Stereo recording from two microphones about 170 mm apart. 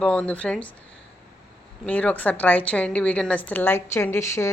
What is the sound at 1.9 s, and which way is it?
Speech, 10° left (ahead or behind).